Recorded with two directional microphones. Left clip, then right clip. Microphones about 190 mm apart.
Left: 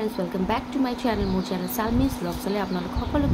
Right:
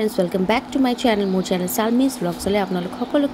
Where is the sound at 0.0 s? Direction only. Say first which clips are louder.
Right 7 dB; 30° right (ahead or behind).